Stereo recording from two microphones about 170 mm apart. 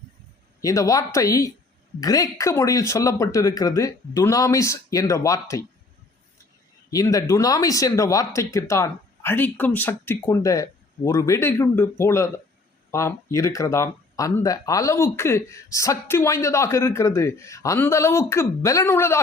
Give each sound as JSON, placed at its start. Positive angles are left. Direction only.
{"t": 0.6, "sound": "speech", "side_deg": 20}
{"t": 6.9, "sound": "speech", "side_deg": 20}